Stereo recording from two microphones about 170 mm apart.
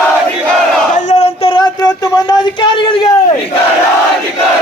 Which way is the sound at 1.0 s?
45° left (ahead or behind).